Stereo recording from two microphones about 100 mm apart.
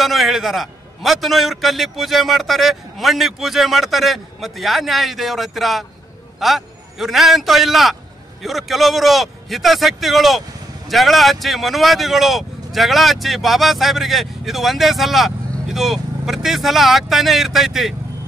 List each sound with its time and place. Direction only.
0.0 s speech: centre (ahead or behind)